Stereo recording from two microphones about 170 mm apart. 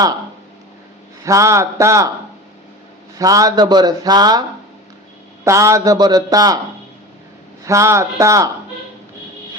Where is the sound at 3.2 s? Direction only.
20° right (ahead or behind).